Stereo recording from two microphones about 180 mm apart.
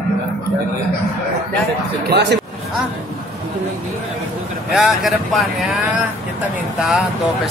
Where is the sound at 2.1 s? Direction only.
70° right (ahead or behind).